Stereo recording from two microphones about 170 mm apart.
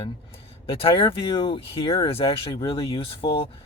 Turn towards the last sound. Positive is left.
turn(degrees=35)  # may be behind; listen again after turning